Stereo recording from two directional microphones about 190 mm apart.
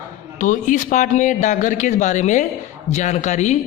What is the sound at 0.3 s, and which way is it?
Speech, 45° left (ahead or behind).